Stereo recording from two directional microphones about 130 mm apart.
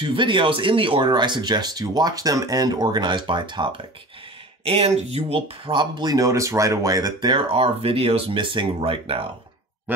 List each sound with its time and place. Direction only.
0.0 s speech: 40° right (ahead or behind)
4.6 s speech: 50° right (ahead or behind)
5.7 s speech: 35° right (ahead or behind)
9.9 s speech: 15° right (ahead or behind)